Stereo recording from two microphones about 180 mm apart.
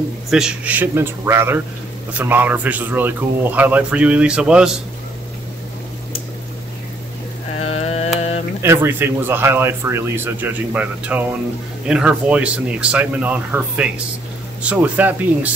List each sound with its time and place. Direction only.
0.3 s speech: 5° right (ahead or behind)
7.5 s a sound: 35° left (ahead or behind)
8.6 s speech: 15° right (ahead or behind)